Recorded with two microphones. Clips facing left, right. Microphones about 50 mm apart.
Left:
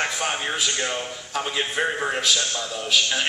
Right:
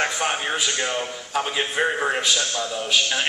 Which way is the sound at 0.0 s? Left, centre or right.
Centre.